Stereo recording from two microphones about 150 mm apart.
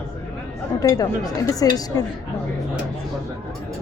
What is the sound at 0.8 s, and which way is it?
Speech, 25° left (ahead or behind).